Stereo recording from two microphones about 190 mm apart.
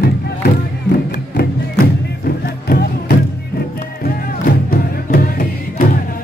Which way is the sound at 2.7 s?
50° left (ahead or behind).